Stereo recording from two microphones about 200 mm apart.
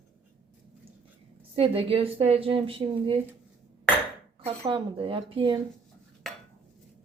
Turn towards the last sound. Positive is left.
turn(degrees=-25)  # may be behind; listen again after turning